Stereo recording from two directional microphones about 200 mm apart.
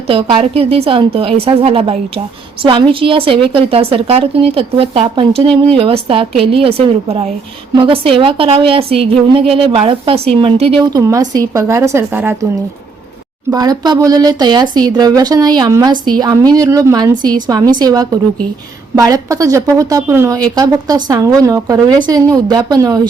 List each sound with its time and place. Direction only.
0.1 s a woman's voice: 25° right (ahead or behind); by 12.5 s 10° right (ahead or behind)
13.5 s a woman's voice: 20° right (ahead or behind)